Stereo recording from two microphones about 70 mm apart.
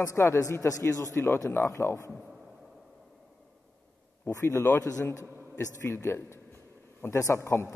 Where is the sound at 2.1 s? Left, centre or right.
Centre.